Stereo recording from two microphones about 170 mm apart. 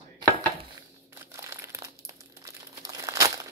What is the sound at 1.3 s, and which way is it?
Crumpling, 15° right (ahead or behind).